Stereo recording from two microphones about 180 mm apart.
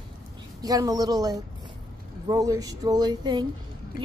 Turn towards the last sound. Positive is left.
turn(degrees=-25)  # may be behind; listen again after turning